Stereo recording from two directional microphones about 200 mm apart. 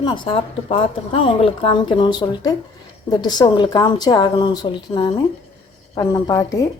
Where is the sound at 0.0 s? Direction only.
25° left (ahead or behind).